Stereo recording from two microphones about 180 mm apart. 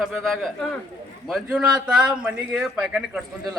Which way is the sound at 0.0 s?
Centre (ahead or behind).